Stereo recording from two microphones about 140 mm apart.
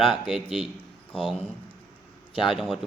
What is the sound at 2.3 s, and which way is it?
Speech, 35° left (ahead or behind).